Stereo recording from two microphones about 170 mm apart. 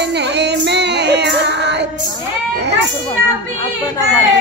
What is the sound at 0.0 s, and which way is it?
Female singing, 80° right.